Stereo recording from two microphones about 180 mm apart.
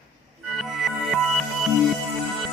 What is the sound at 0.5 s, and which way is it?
Music, centre (ahead or behind).